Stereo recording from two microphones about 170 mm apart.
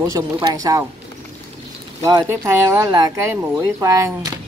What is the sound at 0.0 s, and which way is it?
Speech, 20° right (ahead or behind).